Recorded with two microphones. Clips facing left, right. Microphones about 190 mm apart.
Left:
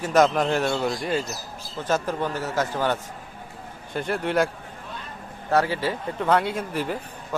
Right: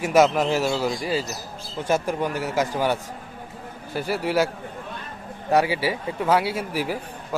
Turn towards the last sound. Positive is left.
turn(degrees=-10)  # may be behind; listen again after turning